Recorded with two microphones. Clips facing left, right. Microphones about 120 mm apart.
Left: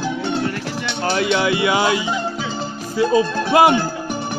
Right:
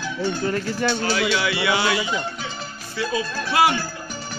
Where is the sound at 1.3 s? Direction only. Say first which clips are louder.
Left 5 dB; 20° left (ahead or behind).